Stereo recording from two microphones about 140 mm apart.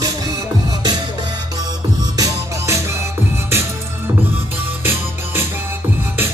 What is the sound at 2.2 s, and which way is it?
Music, 20° right (ahead or behind).